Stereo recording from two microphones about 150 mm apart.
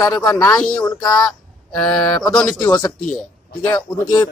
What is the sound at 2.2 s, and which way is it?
Speech, 5° left (ahead or behind).